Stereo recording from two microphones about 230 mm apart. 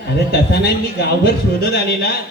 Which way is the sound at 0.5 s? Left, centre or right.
Left.